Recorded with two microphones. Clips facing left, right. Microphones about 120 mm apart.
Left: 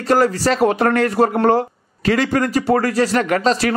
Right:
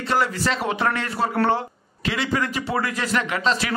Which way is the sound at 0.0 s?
40° left (ahead or behind).